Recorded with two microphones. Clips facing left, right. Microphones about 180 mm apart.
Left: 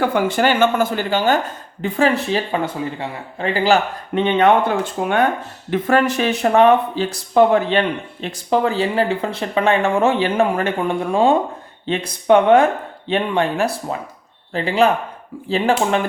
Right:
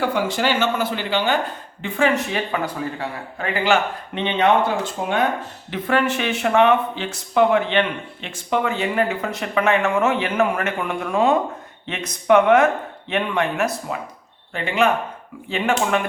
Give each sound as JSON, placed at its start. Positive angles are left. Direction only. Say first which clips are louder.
{"t": 0.0, "sound": "speech", "louder": "left 4 dB", "side_deg": 55}
{"t": 5.7, "sound": "speech", "louder": "left 4 dB", "side_deg": 45}